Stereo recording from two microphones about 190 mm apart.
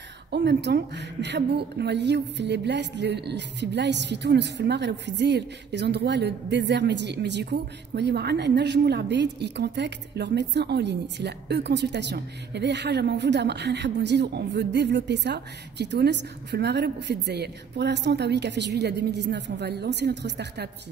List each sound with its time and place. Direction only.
0.3 s a woman's voice: 60° right (ahead or behind)